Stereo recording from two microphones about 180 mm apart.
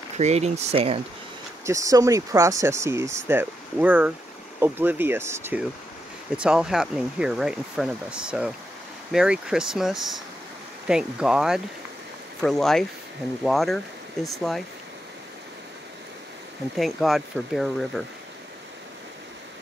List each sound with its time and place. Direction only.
0.2 s speech: 35° right (ahead or behind)
1.7 s speech: 20° right (ahead or behind); by 14.6 s centre (ahead or behind)
16.7 s speech: centre (ahead or behind)